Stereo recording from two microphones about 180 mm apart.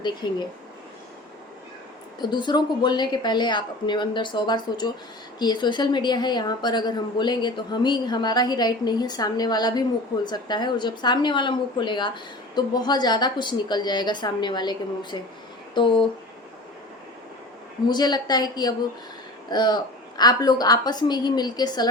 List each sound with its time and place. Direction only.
0.0 s a woman's voice: 25° left (ahead or behind)
2.2 s a woman's voice: 25° left (ahead or behind)
17.8 s a woman's voice: 25° left (ahead or behind)